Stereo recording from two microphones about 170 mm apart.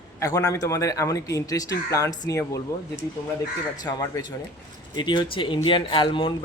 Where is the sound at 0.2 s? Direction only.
20° left (ahead or behind).